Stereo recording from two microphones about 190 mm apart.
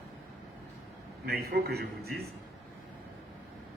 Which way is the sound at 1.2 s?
55° right (ahead or behind).